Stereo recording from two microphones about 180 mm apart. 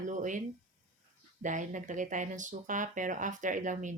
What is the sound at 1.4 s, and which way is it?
Speech, 45° right (ahead or behind).